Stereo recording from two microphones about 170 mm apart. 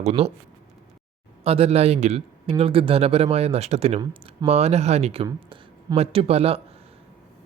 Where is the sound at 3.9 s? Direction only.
25° right (ahead or behind).